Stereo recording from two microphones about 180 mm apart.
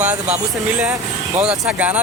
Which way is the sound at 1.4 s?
5° right (ahead or behind).